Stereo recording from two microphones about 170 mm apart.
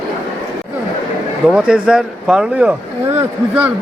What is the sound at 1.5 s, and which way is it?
A man's voice, 5° right (ahead or behind).